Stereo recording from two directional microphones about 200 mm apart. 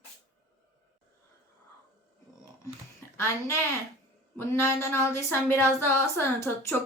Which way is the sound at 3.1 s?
15° left (ahead or behind).